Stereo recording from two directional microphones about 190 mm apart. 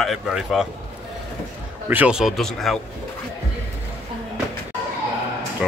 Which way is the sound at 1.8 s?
10° right (ahead or behind).